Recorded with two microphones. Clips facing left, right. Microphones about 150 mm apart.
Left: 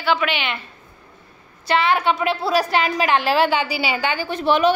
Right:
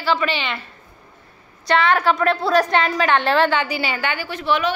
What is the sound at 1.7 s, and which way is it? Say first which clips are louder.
A woman's voice: right 1 dB; 5° left (ahead or behind).